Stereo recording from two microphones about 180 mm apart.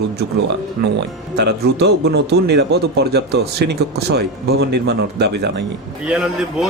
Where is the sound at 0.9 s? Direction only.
70° right (ahead or behind).